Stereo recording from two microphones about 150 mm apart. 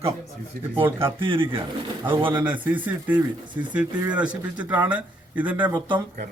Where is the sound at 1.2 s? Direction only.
35° right (ahead or behind).